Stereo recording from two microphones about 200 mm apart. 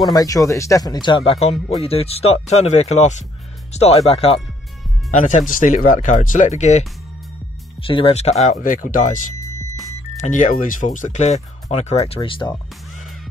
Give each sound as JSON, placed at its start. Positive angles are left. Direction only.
{"t": 0.1, "sound": "speech", "side_deg": 15}
{"t": 5.1, "sound": "speech", "side_deg": 40}
{"t": 7.8, "sound": "speech", "side_deg": 25}